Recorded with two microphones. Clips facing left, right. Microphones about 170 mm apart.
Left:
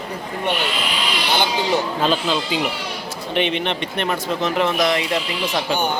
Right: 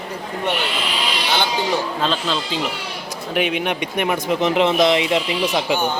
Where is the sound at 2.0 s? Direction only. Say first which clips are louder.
Left 2 dB; 5° left (ahead or behind).